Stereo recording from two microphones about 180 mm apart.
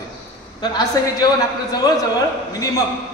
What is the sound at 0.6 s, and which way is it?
A man's voice, 20° left (ahead or behind).